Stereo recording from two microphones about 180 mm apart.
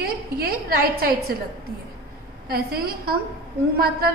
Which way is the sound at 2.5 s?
60° right (ahead or behind).